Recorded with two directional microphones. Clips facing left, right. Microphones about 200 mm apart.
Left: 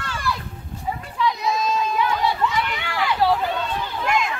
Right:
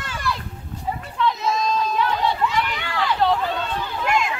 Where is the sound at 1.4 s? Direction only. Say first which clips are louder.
Even; centre (ahead or behind).